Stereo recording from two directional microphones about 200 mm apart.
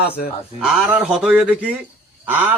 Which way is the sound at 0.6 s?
5° right (ahead or behind).